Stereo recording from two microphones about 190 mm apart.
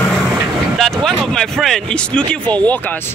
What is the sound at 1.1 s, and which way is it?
Speech, centre (ahead or behind).